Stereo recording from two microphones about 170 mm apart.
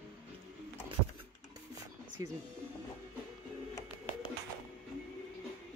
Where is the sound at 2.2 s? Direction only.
20° right (ahead or behind).